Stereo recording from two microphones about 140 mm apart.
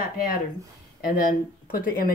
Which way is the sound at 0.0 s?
90° left.